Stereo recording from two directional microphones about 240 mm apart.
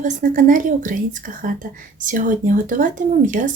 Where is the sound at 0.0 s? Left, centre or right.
Right.